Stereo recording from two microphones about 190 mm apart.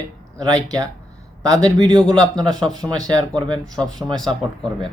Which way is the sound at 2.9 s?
20° right (ahead or behind).